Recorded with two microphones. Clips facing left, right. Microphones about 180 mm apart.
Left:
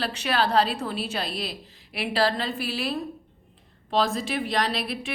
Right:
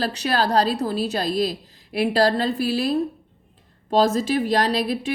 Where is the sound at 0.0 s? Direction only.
40° right (ahead or behind).